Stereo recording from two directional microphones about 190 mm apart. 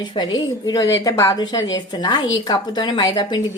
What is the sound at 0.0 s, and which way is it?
A woman's voice, 25° left (ahead or behind).